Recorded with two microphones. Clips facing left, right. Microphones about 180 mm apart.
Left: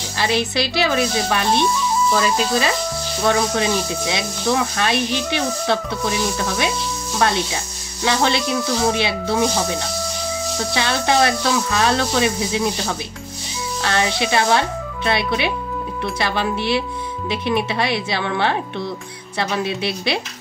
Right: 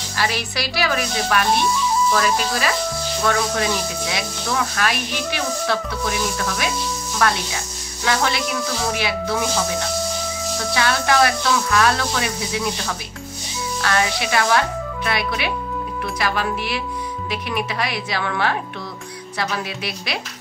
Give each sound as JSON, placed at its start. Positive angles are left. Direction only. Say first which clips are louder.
{"t": 0.2, "sound": "speech", "louder": "left 4 dB", "side_deg": 25}
{"t": 7.2, "sound": "speech", "louder": "left 2 dB", "side_deg": 25}
{"t": 10.7, "sound": "speech", "louder": "even", "side_deg": 25}